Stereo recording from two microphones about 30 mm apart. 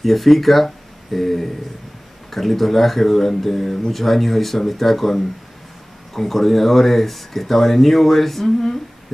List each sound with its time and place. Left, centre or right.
0.0 s speech: centre